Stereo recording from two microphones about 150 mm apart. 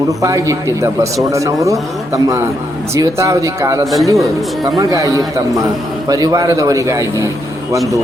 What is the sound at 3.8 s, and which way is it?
Speech, centre (ahead or behind).